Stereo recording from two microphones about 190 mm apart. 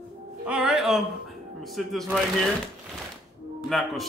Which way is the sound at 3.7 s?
Centre (ahead or behind).